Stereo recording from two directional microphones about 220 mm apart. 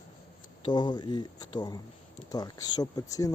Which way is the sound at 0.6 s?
20° left (ahead or behind).